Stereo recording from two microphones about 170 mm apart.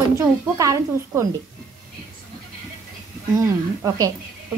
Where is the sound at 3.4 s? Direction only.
20° right (ahead or behind).